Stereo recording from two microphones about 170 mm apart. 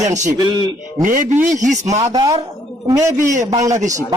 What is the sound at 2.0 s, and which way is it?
Speech, 20° right (ahead or behind).